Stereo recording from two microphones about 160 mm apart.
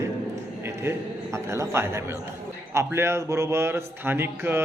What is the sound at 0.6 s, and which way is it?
A man's voice, 15° right (ahead or behind).